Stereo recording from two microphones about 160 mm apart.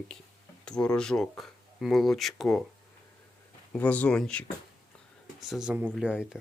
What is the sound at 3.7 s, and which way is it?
Speech, 10° left (ahead or behind).